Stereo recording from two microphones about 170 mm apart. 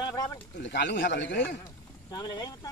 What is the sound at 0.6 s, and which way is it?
Speech, 90° left.